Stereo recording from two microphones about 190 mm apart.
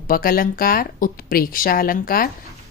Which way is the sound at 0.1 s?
50° left (ahead or behind).